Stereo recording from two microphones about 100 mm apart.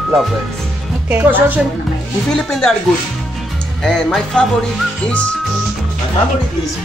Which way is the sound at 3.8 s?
5° left (ahead or behind).